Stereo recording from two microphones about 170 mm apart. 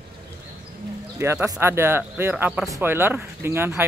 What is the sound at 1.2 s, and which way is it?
Speech, 15° right (ahead or behind).